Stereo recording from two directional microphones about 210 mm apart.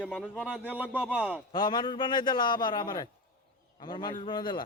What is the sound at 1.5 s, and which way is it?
A man's voice, 20° left (ahead or behind).